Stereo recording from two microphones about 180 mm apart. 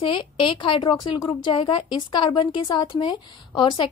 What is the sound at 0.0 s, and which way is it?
A woman's voice, 30° left (ahead or behind).